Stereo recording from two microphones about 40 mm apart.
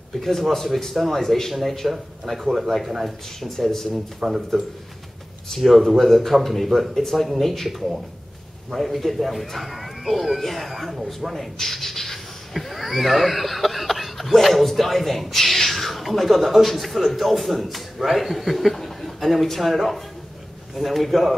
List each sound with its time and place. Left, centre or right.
0.2 s speech: centre
3.3 s speech: centre
4.2 s speech: right
5.7 s speech: centre